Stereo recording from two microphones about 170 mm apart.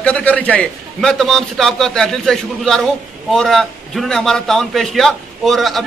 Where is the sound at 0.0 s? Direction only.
10° left (ahead or behind).